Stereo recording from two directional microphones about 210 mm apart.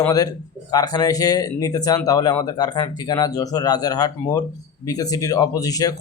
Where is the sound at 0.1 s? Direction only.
15° left (ahead or behind).